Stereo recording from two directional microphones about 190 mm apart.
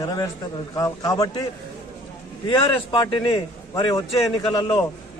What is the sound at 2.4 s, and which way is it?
Speech, 25° left (ahead or behind).